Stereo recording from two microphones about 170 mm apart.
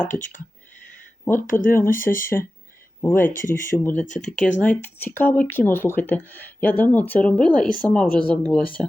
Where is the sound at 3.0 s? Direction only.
15° left (ahead or behind).